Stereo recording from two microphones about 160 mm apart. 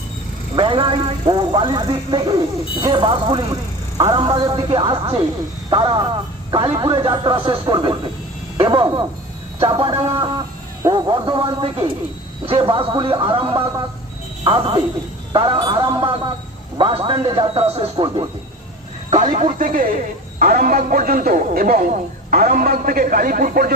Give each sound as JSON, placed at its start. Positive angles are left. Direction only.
{"t": 0.5, "sound": "a man's voice", "side_deg": -30}
{"t": 9.9, "sound": "a man's voice", "side_deg": -20}
{"t": 19.1, "sound": "speech", "side_deg": -50}